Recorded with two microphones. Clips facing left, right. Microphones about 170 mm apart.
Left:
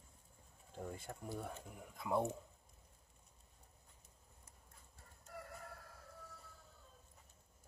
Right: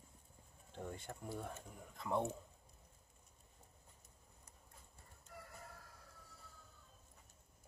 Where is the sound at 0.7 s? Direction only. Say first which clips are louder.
Left 1 dB; 5° left (ahead or behind).